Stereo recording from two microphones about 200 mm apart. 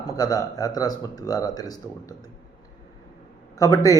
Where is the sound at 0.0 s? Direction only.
20° left (ahead or behind).